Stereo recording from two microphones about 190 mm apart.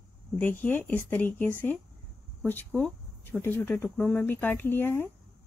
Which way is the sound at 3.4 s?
10° left (ahead or behind).